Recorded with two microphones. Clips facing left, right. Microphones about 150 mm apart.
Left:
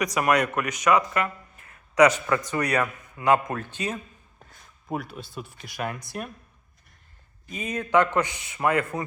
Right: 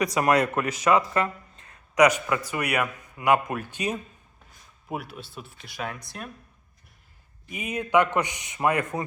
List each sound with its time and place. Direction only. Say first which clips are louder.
0.0 s speech: right 1 dB; 30° right (ahead or behind)
2.0 s a man's voice: left 1 dB; 15° right (ahead or behind); by 6.3 s 5° left (ahead or behind)
7.5 s a man's voice: even; 15° right (ahead or behind)